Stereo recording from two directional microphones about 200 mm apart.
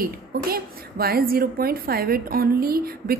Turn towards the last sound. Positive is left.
turn(degrees=-50)  # may be behind; listen again after turning